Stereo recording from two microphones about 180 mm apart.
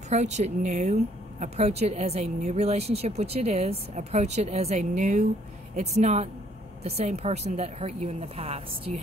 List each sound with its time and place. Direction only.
0.1 s a woman's voice: 40° right (ahead or behind)